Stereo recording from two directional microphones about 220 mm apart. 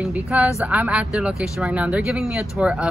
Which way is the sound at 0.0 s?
5° right (ahead or behind).